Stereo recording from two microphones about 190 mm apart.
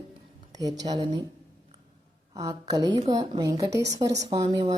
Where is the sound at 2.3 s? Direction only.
20° right (ahead or behind).